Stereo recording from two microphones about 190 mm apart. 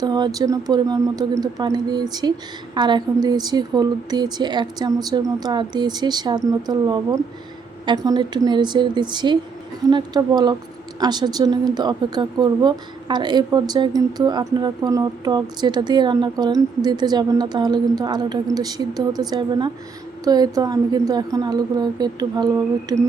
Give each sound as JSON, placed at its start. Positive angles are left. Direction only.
{"t": 0.0, "sound": "speech", "side_deg": -20}